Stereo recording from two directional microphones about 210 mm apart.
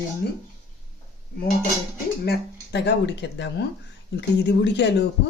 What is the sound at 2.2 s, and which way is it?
Speech, 50° left (ahead or behind).